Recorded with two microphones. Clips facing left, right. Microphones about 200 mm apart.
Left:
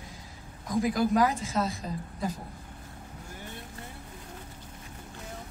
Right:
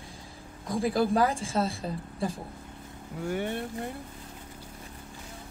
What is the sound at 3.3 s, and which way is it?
Speech, 70° right (ahead or behind).